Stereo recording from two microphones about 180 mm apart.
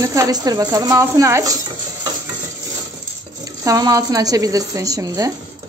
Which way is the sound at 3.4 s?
20° right (ahead or behind).